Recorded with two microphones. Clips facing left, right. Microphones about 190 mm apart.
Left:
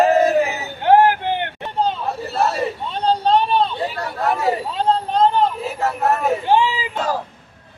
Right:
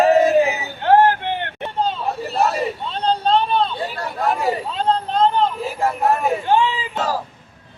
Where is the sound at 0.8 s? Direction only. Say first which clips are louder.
Left 1 dB; 15° left (ahead or behind).